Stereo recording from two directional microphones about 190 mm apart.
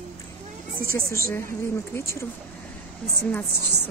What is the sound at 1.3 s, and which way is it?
Speech, 15° left (ahead or behind).